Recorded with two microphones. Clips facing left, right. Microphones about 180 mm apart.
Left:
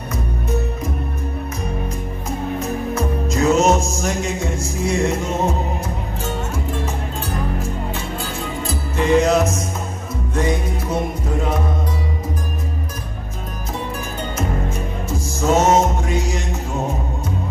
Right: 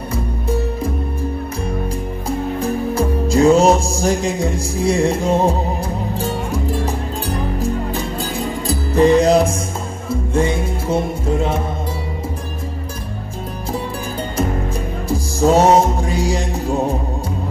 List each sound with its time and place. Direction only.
0.1 s music: 30° right (ahead or behind)
2.2 s music: 30° right (ahead or behind)
15.0 s music: 35° right (ahead or behind)